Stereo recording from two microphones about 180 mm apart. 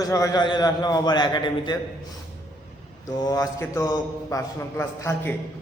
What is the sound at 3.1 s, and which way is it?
A man's voice, 20° left (ahead or behind).